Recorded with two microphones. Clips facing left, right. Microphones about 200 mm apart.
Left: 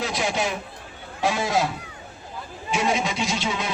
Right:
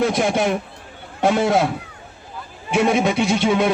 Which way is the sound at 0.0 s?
55° right (ahead or behind).